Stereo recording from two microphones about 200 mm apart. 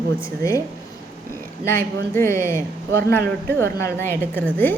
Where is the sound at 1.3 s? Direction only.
10° left (ahead or behind).